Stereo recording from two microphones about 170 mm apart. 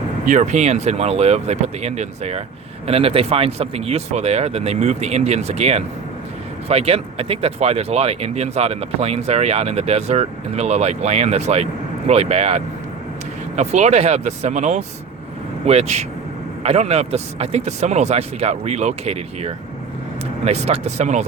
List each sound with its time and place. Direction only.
0.3 s speech: 45° right (ahead or behind)